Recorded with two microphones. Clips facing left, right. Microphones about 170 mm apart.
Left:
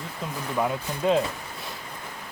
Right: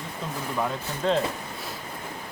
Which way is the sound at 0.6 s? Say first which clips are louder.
Left 3 dB; 10° left (ahead or behind).